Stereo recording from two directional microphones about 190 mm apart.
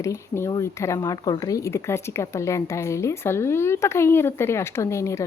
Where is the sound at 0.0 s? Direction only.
15° left (ahead or behind).